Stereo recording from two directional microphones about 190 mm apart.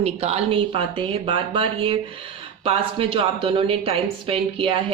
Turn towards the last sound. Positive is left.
turn(degrees=-30)  # may be behind; listen again after turning